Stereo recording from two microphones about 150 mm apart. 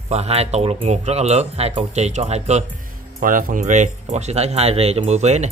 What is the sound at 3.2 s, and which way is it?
Speech, 65° right (ahead or behind).